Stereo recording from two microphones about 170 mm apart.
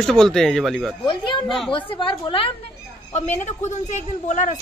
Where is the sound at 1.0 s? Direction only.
30° left (ahead or behind).